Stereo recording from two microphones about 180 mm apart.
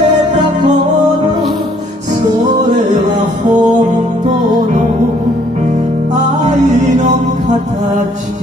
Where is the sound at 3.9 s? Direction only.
25° right (ahead or behind).